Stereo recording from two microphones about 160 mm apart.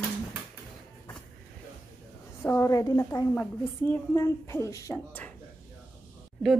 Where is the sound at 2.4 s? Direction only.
15° left (ahead or behind).